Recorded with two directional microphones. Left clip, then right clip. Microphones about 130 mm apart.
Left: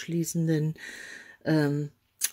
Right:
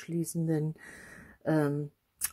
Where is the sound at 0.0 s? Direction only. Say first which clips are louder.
Left 4 dB; 20° left (ahead or behind).